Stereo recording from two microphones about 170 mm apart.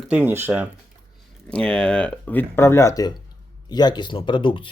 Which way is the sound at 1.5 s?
5° left (ahead or behind).